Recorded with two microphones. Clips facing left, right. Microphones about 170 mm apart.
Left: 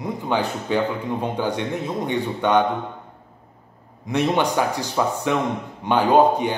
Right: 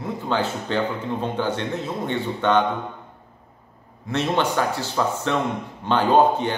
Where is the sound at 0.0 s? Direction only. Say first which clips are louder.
Left 1 dB; 15° left (ahead or behind).